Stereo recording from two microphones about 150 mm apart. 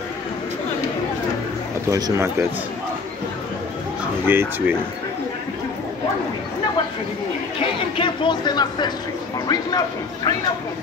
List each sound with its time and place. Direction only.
1.9 s speech: 25° right (ahead or behind)
4.3 s speech: 15° right (ahead or behind)
7.6 s speech: 35° left (ahead or behind)